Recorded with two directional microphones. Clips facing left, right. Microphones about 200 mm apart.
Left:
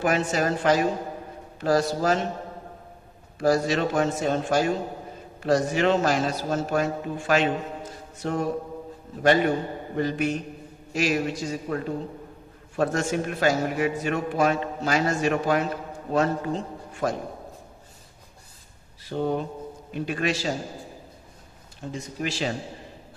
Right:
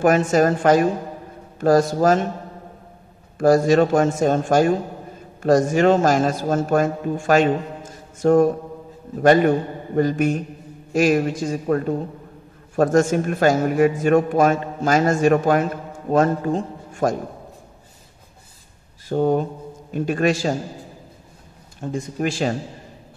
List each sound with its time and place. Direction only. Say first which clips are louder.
0.0 s a man's voice: right 8 dB; 50° right (ahead or behind)
3.3 s a man's voice: right 8 dB; 50° right (ahead or behind)
19.0 s a man's voice: right 7 dB; 45° right (ahead or behind)
21.9 s a man's voice: right 7 dB; 50° right (ahead or behind)